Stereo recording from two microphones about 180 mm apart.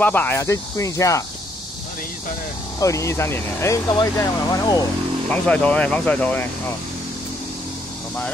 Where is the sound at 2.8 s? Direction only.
15° left (ahead or behind).